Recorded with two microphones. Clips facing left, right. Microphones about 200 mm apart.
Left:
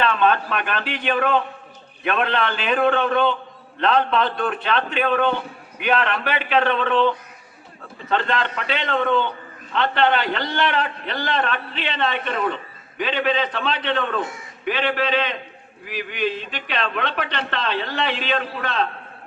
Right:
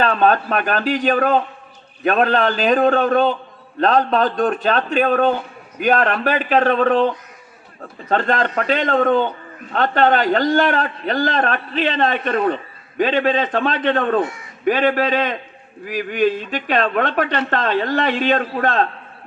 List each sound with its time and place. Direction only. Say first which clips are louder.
0.0 s a man's voice: right 3 dB; 40° right (ahead or behind)
8.1 s a man's voice: right 4 dB; 45° right (ahead or behind)